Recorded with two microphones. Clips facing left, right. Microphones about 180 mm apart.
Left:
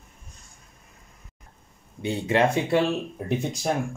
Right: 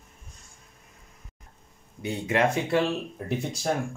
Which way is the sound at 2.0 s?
30° left (ahead or behind).